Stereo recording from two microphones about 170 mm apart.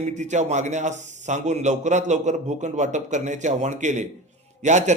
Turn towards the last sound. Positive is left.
turn(degrees=-45)  # may be behind; listen again after turning